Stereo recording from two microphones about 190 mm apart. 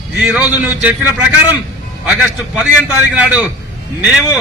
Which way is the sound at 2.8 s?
5° right (ahead or behind).